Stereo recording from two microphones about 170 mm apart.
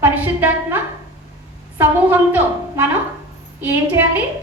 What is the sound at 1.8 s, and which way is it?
A woman's voice, 10° right (ahead or behind).